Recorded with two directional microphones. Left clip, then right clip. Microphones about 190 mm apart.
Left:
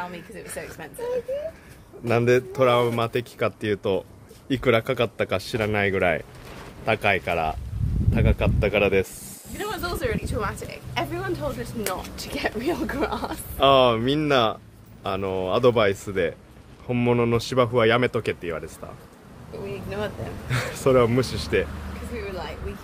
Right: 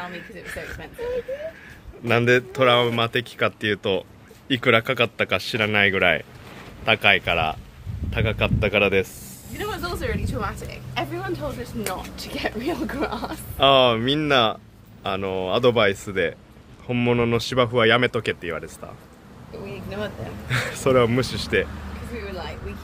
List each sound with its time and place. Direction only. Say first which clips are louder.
0.0 s speech: right 1 dB; 5° left (ahead or behind)
2.0 s a man's voice: right 2 dB; 5° left (ahead or behind)
9.7 s a woman's voice: left 1 dB; 50° left (ahead or behind); by 11.1 s 35° left (ahead or behind)
11.1 s a man's voice: even; 15° left (ahead or behind)
19.7 s speech: left 1 dB; 15° left (ahead or behind)